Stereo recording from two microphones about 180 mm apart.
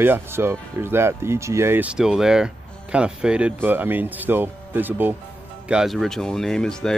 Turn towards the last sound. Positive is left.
turn(degrees=5)  # may be behind; listen again after turning